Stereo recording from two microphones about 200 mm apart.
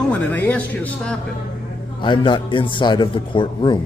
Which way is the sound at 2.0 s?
25° left (ahead or behind).